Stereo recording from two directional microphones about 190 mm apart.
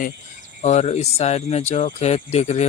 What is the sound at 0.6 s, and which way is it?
Speech, 35° left (ahead or behind).